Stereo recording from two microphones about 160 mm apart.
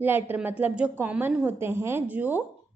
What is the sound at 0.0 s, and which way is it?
A woman's voice, 10° right (ahead or behind).